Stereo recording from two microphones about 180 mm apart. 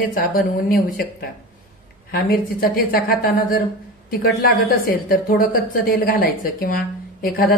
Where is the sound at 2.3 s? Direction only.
55° left (ahead or behind).